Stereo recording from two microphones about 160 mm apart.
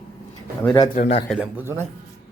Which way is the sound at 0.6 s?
30° left (ahead or behind).